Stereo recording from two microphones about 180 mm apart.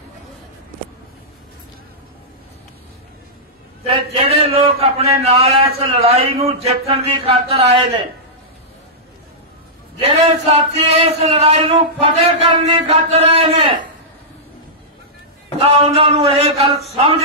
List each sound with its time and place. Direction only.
3.8 s speech: 35° right (ahead or behind)
9.9 s speech: 35° right (ahead or behind)
15.6 s speech: 30° right (ahead or behind)